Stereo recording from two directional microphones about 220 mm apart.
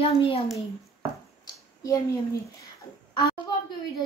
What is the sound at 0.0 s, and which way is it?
Child singing, 25° left (ahead or behind).